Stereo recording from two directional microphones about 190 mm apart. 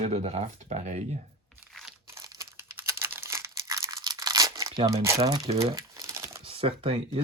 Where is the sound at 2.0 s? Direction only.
15° right (ahead or behind).